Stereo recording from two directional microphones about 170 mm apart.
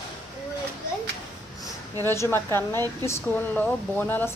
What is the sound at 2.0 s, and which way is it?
Speech, 15° left (ahead or behind).